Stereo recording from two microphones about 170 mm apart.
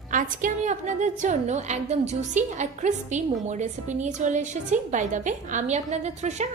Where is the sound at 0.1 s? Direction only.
50° right (ahead or behind).